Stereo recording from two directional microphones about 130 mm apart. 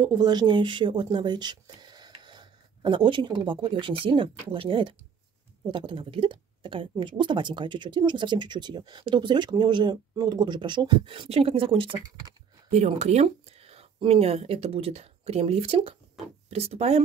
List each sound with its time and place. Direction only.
0.0 s speech: 35° right (ahead or behind)
12.7 s speech: 60° right (ahead or behind)